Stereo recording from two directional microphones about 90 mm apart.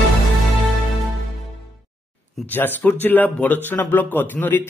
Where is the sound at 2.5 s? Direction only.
20° left (ahead or behind).